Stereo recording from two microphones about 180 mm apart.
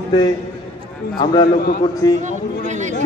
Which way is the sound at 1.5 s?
60° left (ahead or behind).